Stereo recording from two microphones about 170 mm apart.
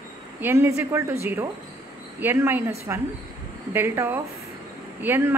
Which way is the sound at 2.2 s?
15° right (ahead or behind).